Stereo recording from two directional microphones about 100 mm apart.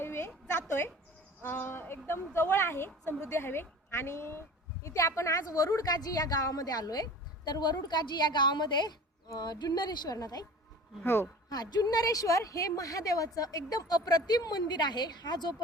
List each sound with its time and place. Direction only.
0.0 s a sound: 25° left (ahead or behind)
1.4 s a woman's voice: 20° left (ahead or behind); by 10.4 s 40° left (ahead or behind)
11.0 s a woman's voice: 25° left (ahead or behind)
11.4 s a woman's voice: 45° left (ahead or behind)